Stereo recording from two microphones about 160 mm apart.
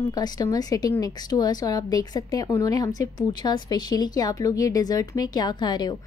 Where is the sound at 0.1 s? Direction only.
25° left (ahead or behind).